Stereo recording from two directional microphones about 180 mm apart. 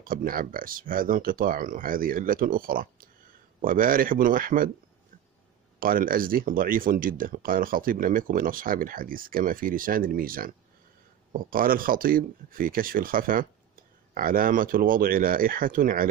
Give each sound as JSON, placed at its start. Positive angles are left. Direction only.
{"t": 0.0, "sound": "speech", "side_deg": -50}
{"t": 5.8, "sound": "speech", "side_deg": -50}